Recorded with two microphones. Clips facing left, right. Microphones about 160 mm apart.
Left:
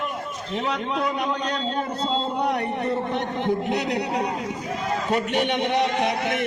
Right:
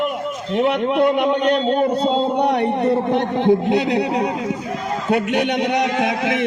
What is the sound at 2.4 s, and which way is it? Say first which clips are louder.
A man's voice: right 7 dB; 30° right (ahead or behind).